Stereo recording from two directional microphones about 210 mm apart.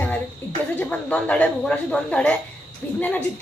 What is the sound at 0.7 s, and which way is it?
Speech, 5° left (ahead or behind).